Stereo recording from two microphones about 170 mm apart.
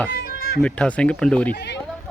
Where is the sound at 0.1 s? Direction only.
70° left (ahead or behind).